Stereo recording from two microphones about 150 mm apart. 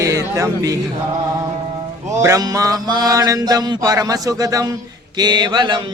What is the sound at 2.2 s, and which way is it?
Mantra, 20° right (ahead or behind).